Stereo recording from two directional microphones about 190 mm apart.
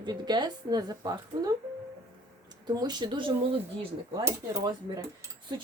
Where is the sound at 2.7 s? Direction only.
20° right (ahead or behind).